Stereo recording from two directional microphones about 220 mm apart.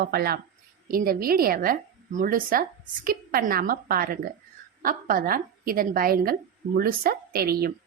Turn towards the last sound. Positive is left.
turn(degrees=-45)  # may be behind; listen again after turning